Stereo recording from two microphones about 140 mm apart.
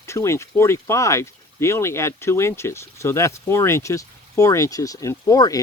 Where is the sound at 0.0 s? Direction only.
20° left (ahead or behind).